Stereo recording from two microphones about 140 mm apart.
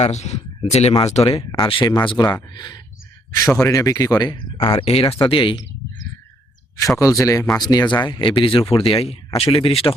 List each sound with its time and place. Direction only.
0.0 s speech: 50° left (ahead or behind)
1.5 s speech: 35° left (ahead or behind)
4.9 s speech: 45° left (ahead or behind)
6.7 s speech: 25° left (ahead or behind); by 9.9 s 40° left (ahead or behind)